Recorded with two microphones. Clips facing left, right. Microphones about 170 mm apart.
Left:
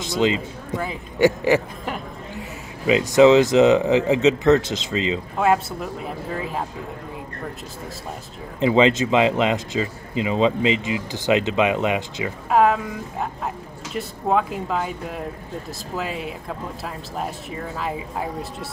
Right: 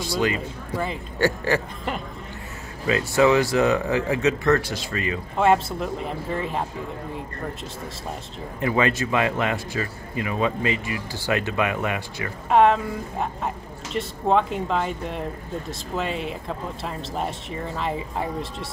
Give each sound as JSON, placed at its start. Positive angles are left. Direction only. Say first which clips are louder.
{"t": 0.0, "sound": "speech", "louder": "left 3 dB", "side_deg": 20}
{"t": 2.9, "sound": "speech", "louder": "left 5 dB", "side_deg": 15}
{"t": 5.4, "sound": "speech", "louder": "right 1 dB", "side_deg": 5}
{"t": 8.5, "sound": "speech", "louder": "left 6 dB", "side_deg": 20}
{"t": 12.4, "sound": "speech", "louder": "right 1 dB", "side_deg": 5}